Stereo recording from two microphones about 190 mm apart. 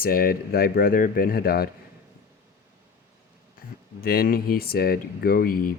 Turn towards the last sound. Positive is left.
turn(degrees=50)  # may be behind; listen again after turning